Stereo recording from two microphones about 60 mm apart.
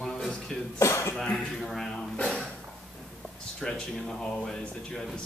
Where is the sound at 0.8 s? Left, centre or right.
Left.